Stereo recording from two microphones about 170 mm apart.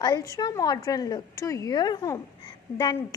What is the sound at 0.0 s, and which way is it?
A woman's voice, 20° left (ahead or behind).